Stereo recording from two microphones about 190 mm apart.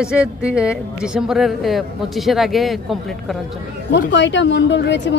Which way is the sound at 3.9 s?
70° left (ahead or behind).